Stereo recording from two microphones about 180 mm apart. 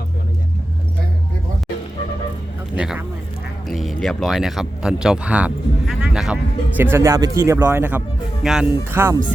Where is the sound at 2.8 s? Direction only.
5° right (ahead or behind).